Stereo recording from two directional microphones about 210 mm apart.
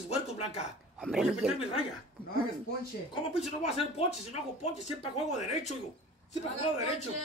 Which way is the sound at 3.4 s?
30° left (ahead or behind).